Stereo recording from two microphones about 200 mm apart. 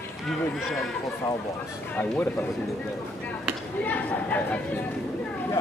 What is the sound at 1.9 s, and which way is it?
Speech, 10° left (ahead or behind).